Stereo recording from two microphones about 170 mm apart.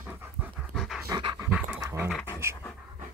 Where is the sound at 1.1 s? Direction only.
25° right (ahead or behind).